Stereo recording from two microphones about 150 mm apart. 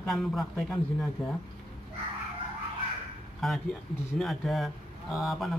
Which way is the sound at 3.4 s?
Centre (ahead or behind).